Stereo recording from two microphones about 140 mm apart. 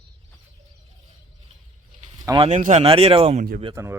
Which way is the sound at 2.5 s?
60° right (ahead or behind).